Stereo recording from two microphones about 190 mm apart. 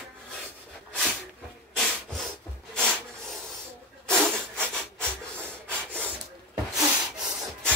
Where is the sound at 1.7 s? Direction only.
Centre (ahead or behind).